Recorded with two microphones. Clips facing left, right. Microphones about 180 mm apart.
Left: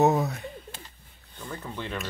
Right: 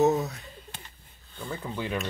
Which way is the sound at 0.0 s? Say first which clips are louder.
Left 1 dB; 60° left (ahead or behind).